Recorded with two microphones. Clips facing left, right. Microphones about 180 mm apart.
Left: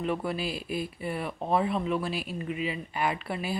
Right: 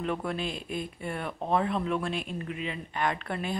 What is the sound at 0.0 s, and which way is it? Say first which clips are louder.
Speech: left 1 dB; 5° left (ahead or behind).